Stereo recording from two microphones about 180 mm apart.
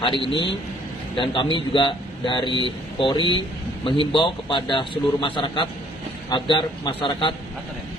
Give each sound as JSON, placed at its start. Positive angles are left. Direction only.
{"t": 0.0, "sound": "a man's voice", "side_deg": 25}